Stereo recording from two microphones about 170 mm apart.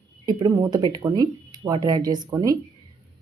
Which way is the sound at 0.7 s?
25° right (ahead or behind).